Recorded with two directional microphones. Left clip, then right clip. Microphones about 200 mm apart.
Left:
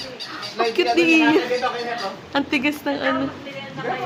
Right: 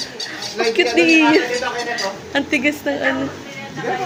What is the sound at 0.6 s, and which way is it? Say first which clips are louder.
Speech: right 3 dB; 10° left (ahead or behind).